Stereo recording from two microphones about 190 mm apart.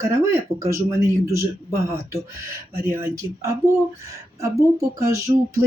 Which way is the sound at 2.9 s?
15° right (ahead or behind).